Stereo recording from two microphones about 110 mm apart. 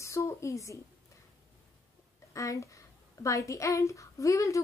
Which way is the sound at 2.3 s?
30° left (ahead or behind).